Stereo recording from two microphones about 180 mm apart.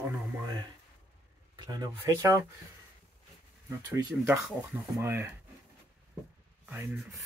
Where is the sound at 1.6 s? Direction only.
25° right (ahead or behind).